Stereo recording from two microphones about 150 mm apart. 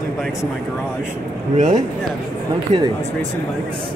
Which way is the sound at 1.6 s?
55° right (ahead or behind).